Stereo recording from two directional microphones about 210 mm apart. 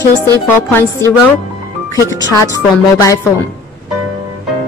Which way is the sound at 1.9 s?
15° left (ahead or behind).